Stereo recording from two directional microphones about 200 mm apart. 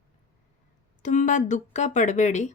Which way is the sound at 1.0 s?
40° left (ahead or behind).